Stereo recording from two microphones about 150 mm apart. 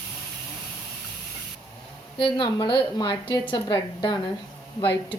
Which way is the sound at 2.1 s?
35° left (ahead or behind).